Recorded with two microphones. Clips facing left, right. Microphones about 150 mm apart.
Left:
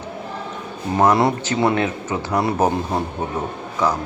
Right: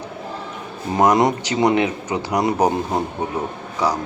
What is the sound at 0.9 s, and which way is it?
Speech, 20° right (ahead or behind).